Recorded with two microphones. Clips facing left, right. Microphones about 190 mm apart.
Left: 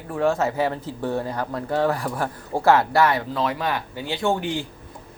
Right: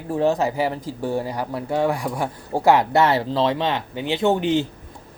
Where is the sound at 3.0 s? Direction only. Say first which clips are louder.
Right 3 dB; 30° right (ahead or behind).